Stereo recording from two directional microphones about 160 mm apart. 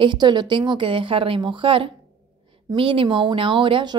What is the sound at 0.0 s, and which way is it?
Speech, 30° right (ahead or behind).